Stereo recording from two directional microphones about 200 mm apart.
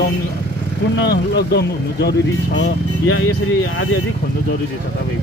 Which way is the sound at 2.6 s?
80° left.